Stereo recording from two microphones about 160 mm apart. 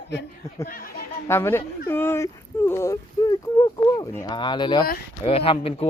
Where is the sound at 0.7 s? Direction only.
65° left (ahead or behind).